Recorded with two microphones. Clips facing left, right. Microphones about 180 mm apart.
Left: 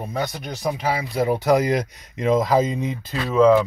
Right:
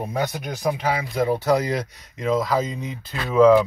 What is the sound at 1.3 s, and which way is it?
Speech, 15° left (ahead or behind).